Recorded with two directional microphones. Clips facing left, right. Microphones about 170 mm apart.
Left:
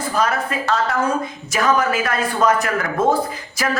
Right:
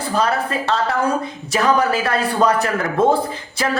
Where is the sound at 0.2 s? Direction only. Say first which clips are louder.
Right 1 dB; 30° right (ahead or behind).